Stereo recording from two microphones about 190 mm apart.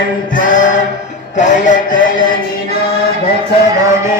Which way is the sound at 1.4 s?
40° left (ahead or behind).